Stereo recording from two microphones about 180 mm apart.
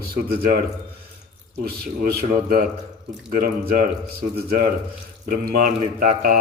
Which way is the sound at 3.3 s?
55° right (ahead or behind).